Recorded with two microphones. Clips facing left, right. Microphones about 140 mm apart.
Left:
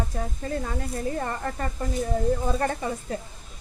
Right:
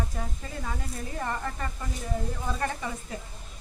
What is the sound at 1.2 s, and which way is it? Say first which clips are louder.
Speech: left 3 dB; 40° left (ahead or behind).